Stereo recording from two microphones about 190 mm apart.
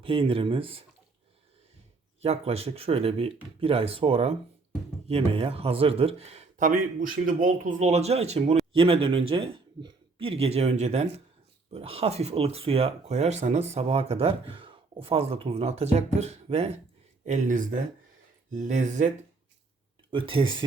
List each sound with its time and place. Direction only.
0.0 s speech: 30° right (ahead or behind)
2.2 s speech: 35° right (ahead or behind)
20.1 s speech: 25° right (ahead or behind)